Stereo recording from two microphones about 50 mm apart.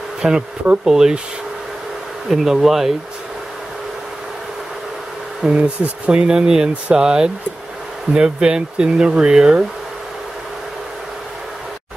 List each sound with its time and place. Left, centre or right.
0.2 s speech: centre
2.2 s speech: centre
5.4 s speech: centre